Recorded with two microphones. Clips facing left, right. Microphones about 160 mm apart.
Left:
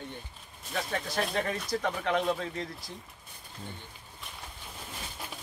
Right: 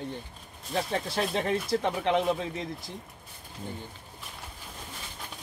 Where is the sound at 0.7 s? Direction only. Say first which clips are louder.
Right 3 dB; 30° right (ahead or behind).